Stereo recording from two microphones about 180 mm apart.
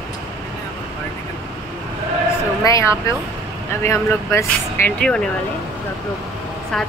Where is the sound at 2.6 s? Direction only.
15° left (ahead or behind).